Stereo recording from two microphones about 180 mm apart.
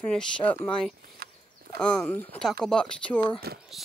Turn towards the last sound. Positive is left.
turn(degrees=-60)  # may be behind; listen again after turning